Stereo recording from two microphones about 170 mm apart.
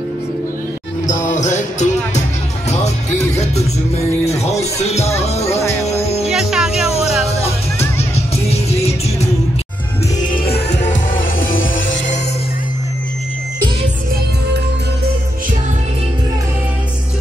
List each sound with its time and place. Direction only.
1.0 s music: 45° left (ahead or behind)
3.3 s music: 40° left (ahead or behind)
5.6 s music: 15° left (ahead or behind)
5.9 s music: 40° left (ahead or behind)
6.2 s music: 5° right (ahead or behind)
8.5 s music: 40° left (ahead or behind)
11.7 s music: 90° left